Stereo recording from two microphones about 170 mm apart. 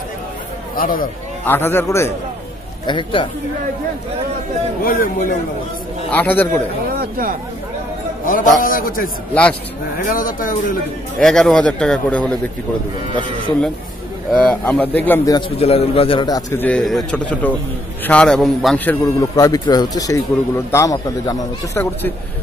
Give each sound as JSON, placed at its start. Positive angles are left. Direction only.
{"t": 0.7, "sound": "a man's voice", "side_deg": 55}
{"t": 1.4, "sound": "speech", "side_deg": 10}
{"t": 2.9, "sound": "speech", "side_deg": 30}
{"t": 4.8, "sound": "speech", "side_deg": 55}
{"t": 6.0, "sound": "speech", "side_deg": 10}
{"t": 6.9, "sound": "speech", "side_deg": -60}
{"t": 8.5, "sound": "a man's voice", "side_deg": 55}
{"t": 9.3, "sound": "speech", "side_deg": 10}
{"t": 10.0, "sound": "speech", "side_deg": 55}
{"t": 11.1, "sound": "a man's voice", "side_deg": 0}
{"t": 14.3, "sound": "speech", "side_deg": 10}
{"t": 15.6, "sound": "a man's voice", "side_deg": 35}
{"t": 16.6, "sound": "a man's voice", "side_deg": 5}
{"t": 19.3, "sound": "speech", "side_deg": 20}